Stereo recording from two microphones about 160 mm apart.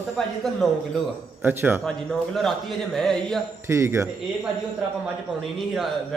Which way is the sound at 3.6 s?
15° right (ahead or behind).